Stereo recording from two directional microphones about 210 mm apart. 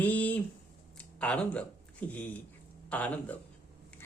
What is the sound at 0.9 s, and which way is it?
Speech, 5° left (ahead or behind).